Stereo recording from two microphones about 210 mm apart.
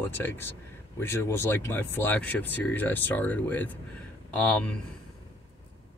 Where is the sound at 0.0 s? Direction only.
10° left (ahead or behind).